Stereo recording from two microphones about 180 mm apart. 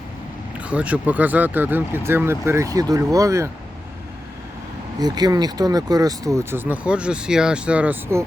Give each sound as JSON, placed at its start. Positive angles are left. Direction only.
{"t": 0.6, "sound": "speech", "side_deg": -5}
{"t": 4.9, "sound": "speech", "side_deg": -20}